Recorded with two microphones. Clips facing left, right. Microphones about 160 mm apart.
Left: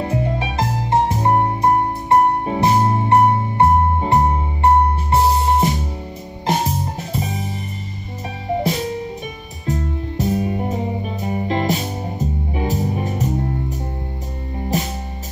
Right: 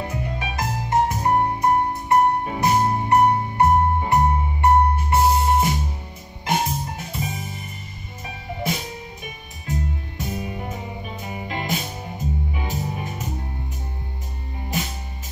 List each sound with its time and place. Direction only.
0.0 s music: 30° left (ahead or behind)
9.7 s music: 35° left (ahead or behind)